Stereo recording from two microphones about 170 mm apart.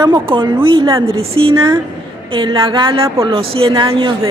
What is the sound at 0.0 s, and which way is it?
Speech, 30° right (ahead or behind).